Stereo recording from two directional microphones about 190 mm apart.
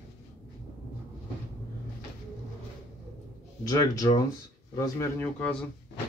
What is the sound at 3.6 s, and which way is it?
Speech, 20° left (ahead or behind).